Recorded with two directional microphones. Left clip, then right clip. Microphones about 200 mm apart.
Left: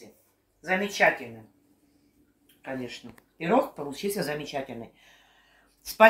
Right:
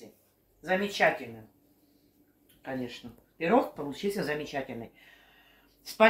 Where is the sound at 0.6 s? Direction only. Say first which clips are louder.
Left 2 dB; 5° left (ahead or behind).